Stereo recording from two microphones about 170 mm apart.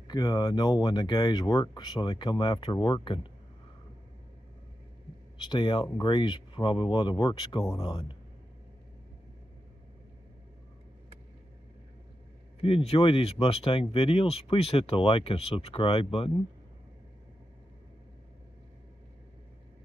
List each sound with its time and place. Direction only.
0.1 s speech: 25° left (ahead or behind)
5.4 s speech: 30° left (ahead or behind)
12.6 s speech: 35° left (ahead or behind)